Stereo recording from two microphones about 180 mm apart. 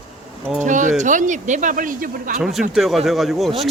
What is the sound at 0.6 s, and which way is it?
Speech, 45° right (ahead or behind).